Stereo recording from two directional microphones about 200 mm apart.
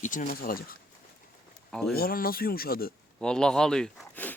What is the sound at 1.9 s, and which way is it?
Speech, 50° left (ahead or behind).